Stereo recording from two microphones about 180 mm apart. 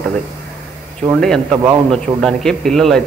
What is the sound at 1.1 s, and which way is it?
A man's voice, 5° left (ahead or behind).